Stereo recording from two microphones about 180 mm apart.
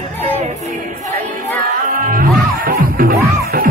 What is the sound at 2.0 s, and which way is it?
Music, 50° right (ahead or behind).